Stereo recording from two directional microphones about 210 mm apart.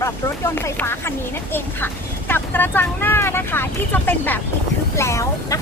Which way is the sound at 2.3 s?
10° left (ahead or behind).